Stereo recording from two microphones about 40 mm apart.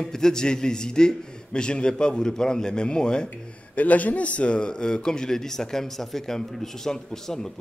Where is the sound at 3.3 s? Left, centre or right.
Left.